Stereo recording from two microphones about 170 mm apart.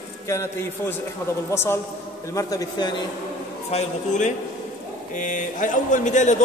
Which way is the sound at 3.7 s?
45° left (ahead or behind).